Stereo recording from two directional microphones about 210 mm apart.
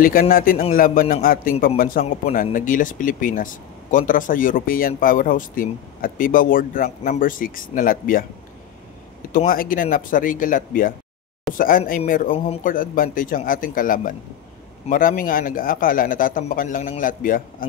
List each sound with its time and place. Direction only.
0.0 s a man's voice: 40° left (ahead or behind)
9.3 s speech: 40° left (ahead or behind)